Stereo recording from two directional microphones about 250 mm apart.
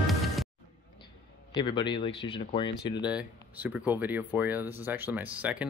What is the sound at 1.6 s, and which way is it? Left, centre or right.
Speech, centre.